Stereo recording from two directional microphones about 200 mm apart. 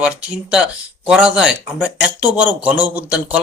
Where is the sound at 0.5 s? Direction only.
5° right (ahead or behind).